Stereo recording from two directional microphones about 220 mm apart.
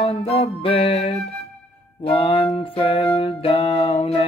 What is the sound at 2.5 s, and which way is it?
Music, 25° left (ahead or behind).